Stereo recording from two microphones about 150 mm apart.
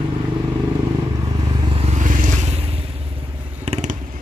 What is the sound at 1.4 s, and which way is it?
Vehicle, 30° right (ahead or behind).